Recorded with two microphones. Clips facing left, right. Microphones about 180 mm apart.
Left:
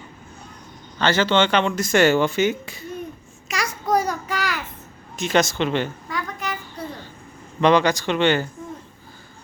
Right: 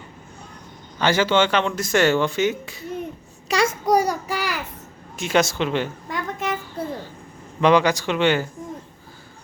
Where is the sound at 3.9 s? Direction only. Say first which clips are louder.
Left 2 dB; 10° right (ahead or behind).